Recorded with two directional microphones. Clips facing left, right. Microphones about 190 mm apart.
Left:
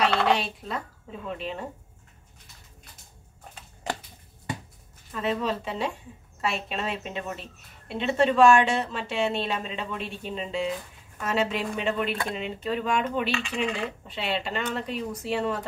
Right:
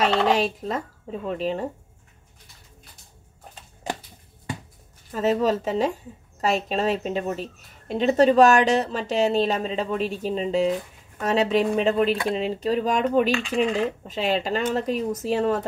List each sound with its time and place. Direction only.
0.4 s a woman's voice: 40° right (ahead or behind)
5.1 s a woman's voice: 40° right (ahead or behind)